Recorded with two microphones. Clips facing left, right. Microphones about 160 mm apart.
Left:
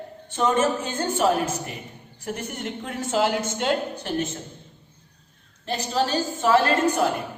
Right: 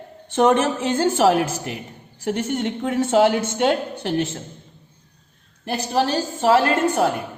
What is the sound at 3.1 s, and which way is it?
A woman's voice, 60° right (ahead or behind).